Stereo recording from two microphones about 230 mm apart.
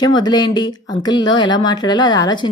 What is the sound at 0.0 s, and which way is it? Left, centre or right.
A woman's voice, centre.